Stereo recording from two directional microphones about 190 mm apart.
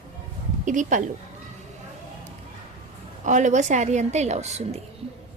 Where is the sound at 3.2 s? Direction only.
40° right (ahead or behind).